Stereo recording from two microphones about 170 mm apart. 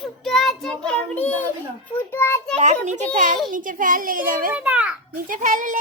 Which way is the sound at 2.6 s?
45° right (ahead or behind).